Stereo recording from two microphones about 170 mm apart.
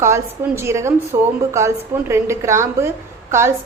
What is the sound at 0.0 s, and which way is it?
A woman's voice, 15° right (ahead or behind).